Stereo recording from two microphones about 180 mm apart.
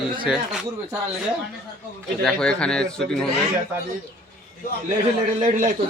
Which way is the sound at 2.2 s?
5° left (ahead or behind).